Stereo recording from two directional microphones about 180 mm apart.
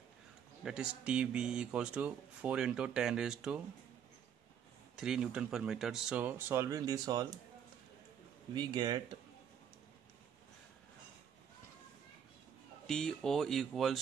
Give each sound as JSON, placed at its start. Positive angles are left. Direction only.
{"t": 0.7, "sound": "speech", "side_deg": -5}
{"t": 4.9, "sound": "speech", "side_deg": -5}
{"t": 8.5, "sound": "speech", "side_deg": -25}
{"t": 12.8, "sound": "speech", "side_deg": 5}